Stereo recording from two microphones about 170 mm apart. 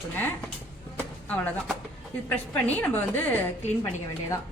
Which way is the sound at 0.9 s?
10° left (ahead or behind).